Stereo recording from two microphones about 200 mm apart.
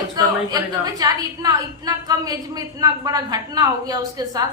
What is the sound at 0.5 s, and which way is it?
A woman's voice, 20° right (ahead or behind).